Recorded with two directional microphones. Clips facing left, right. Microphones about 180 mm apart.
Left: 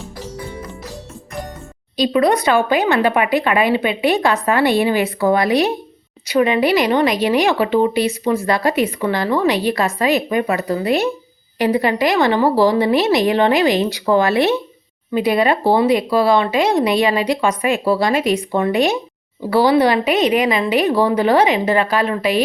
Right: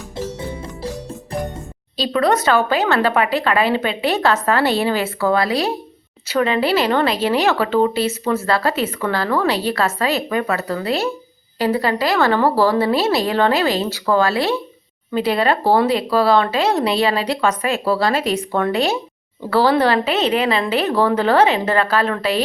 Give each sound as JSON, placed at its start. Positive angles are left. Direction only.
{"t": 2.0, "sound": "speech", "side_deg": 15}